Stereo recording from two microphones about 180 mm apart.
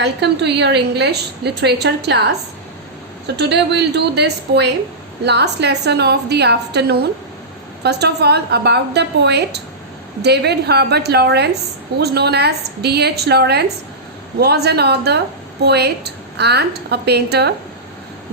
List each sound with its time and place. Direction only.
0.0 s a woman's voice: 70° right (ahead or behind)
3.3 s a woman's voice: 70° right (ahead or behind)